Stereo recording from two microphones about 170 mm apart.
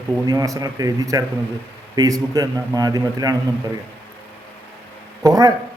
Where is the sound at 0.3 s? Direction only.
20° right (ahead or behind).